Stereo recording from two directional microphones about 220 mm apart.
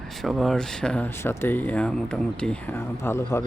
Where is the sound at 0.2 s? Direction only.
Centre (ahead or behind).